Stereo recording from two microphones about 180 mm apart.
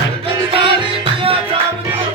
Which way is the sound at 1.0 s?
30° right (ahead or behind).